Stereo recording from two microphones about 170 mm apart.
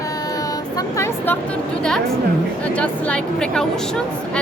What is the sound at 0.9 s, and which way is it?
Speech, 15° left (ahead or behind).